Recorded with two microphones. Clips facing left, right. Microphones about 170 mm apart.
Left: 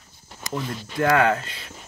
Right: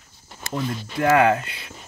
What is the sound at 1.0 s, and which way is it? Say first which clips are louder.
Speech: right 2 dB; 10° right (ahead or behind).